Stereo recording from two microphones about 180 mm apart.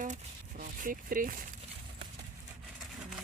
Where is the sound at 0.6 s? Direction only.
50° right (ahead or behind).